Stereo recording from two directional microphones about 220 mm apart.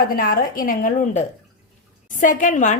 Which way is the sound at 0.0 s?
40° left (ahead or behind).